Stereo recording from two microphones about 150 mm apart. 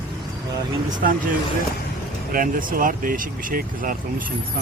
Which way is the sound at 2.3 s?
70° right (ahead or behind).